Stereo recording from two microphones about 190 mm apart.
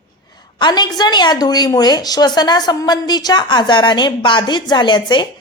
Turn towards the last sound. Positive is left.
turn(degrees=25)  # may be behind; listen again after turning